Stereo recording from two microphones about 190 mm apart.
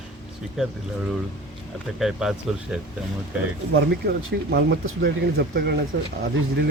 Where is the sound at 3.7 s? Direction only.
65° right (ahead or behind).